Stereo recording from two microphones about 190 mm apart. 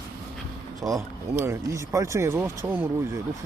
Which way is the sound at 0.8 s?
20° right (ahead or behind).